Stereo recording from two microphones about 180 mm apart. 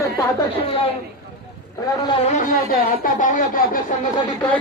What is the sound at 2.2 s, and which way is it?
Speech, 45° left (ahead or behind).